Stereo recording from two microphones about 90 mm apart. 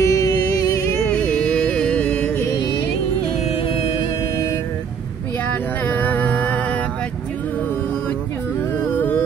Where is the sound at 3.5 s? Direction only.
90° left.